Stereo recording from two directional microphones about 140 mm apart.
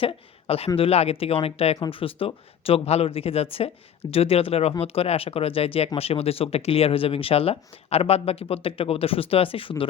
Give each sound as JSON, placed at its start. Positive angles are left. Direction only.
{"t": 0.0, "sound": "speech", "side_deg": 45}